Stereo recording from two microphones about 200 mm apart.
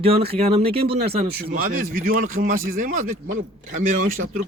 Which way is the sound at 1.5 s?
40° right (ahead or behind).